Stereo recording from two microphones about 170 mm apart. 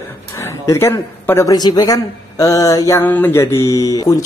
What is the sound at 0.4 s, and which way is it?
Speech, 15° left (ahead or behind).